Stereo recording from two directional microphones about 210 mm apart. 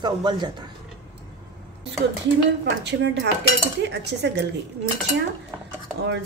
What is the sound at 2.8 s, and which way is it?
Cutlery, 55° right (ahead or behind).